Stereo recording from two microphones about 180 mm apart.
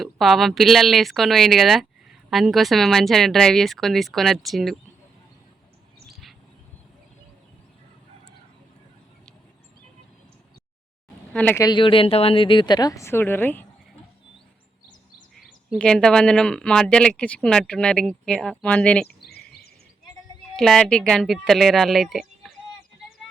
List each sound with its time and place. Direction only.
0.0 s speech: centre (ahead or behind)
11.3 s speech: 10° left (ahead or behind)
11.6 s speech: 25° left (ahead or behind); by 13.7 s 10° left (ahead or behind)
15.7 s speech: 5° left (ahead or behind)
19.0 s a sound: 60° left (ahead or behind)
20.6 s speech: centre (ahead or behind)